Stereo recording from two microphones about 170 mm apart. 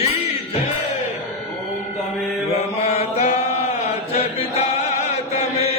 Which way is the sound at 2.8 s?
40° left (ahead or behind).